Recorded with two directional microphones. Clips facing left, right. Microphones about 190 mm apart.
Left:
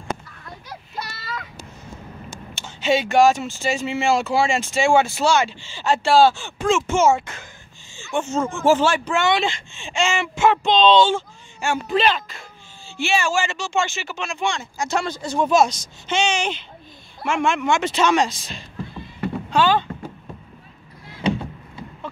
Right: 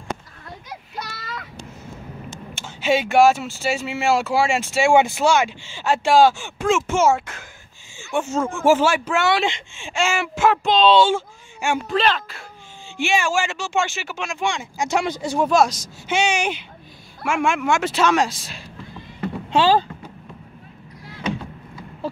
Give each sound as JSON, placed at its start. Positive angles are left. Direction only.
{"t": 2.6, "sound": "speech", "side_deg": -10}
{"t": 11.9, "sound": "speech", "side_deg": 5}
{"t": 12.9, "sound": "speech", "side_deg": -10}
{"t": 19.5, "sound": "speech", "side_deg": -30}